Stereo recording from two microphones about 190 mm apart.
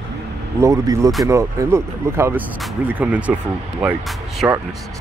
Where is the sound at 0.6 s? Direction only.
15° right (ahead or behind).